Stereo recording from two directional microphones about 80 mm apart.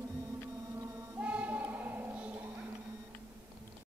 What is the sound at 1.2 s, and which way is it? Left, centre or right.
Choir, centre.